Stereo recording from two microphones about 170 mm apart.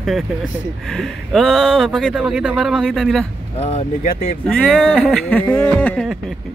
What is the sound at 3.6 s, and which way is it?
Speech, 35° left (ahead or behind).